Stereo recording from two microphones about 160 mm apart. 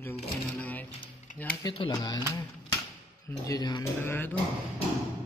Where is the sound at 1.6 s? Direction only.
35° left (ahead or behind).